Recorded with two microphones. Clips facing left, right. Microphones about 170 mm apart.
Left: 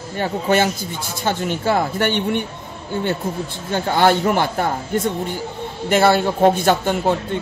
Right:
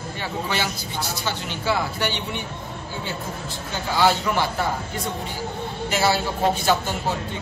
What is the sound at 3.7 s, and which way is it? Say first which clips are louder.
Speech: left 5 dB; 55° left (ahead or behind).